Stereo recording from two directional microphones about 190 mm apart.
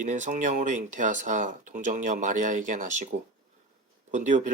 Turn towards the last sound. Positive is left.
turn(degrees=-40)  # may be behind; listen again after turning